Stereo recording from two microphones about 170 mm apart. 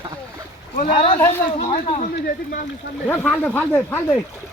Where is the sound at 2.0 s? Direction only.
50° left (ahead or behind).